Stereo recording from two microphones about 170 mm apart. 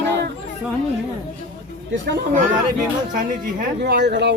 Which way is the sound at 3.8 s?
75° right (ahead or behind).